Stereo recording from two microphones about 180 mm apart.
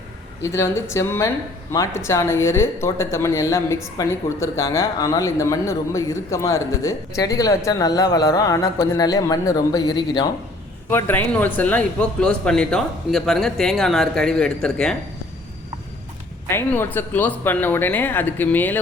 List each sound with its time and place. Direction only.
0.4 s speech: 15° left (ahead or behind)
10.8 s a man's voice: 10° left (ahead or behind)
16.5 s speech: 10° left (ahead or behind)